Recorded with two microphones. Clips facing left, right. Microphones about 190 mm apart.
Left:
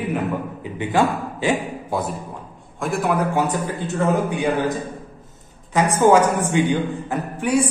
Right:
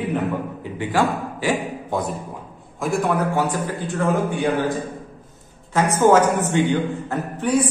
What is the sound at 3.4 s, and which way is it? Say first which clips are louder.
A man's voice: left 1 dB; 20° left (ahead or behind).